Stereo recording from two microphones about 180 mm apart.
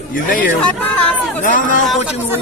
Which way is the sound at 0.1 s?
50° left (ahead or behind).